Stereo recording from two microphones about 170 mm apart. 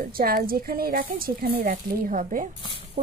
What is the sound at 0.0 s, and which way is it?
Speech, 60° right (ahead or behind).